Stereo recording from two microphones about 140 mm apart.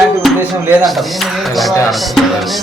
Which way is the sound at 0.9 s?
Centre (ahead or behind).